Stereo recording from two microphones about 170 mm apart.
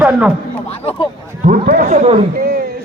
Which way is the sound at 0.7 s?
35° left (ahead or behind).